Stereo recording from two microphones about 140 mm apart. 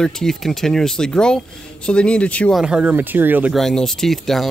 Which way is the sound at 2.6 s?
5° right (ahead or behind).